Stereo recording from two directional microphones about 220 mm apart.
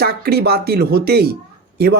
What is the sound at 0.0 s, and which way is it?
Speech, 45° right (ahead or behind).